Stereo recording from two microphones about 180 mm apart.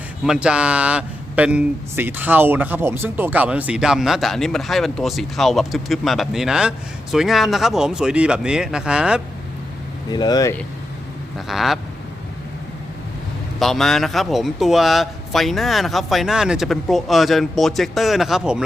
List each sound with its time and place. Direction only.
0.3 s speech: 5° right (ahead or behind)
10.1 s speech: 20° left (ahead or behind)
11.3 s speech: centre (ahead or behind)
13.6 s speech: centre (ahead or behind)